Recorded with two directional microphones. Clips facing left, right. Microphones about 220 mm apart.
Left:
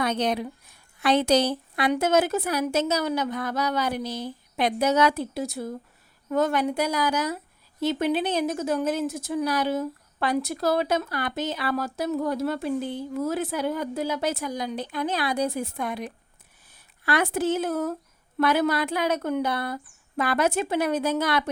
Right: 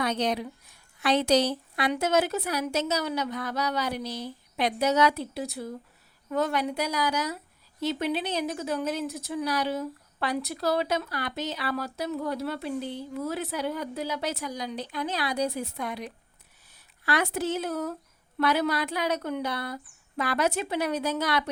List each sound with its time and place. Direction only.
0.0 s a woman's voice: 55° left (ahead or behind)